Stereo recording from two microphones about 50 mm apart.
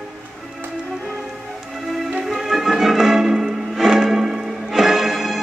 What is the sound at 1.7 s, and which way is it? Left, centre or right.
Music, centre.